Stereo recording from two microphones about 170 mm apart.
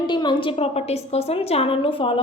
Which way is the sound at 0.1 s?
25° left (ahead or behind).